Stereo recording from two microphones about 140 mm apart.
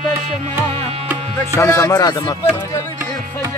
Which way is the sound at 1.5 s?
25° left (ahead or behind).